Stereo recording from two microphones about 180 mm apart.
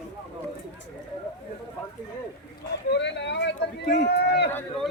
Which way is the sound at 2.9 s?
75° left (ahead or behind).